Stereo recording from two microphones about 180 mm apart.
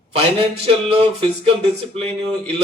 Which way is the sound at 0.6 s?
30° right (ahead or behind).